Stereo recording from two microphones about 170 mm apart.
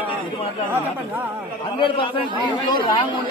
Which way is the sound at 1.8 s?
30° left (ahead or behind).